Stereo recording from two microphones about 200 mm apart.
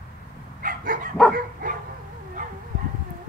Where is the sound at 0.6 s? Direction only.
45° right (ahead or behind).